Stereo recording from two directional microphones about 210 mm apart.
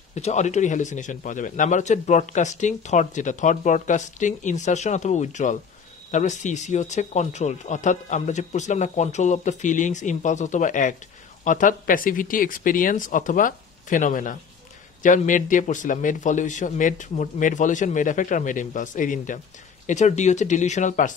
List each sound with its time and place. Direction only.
0.1 s a man's voice: 35° left (ahead or behind)